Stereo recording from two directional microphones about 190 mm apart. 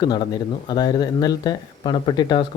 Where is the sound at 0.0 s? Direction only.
20° left (ahead or behind).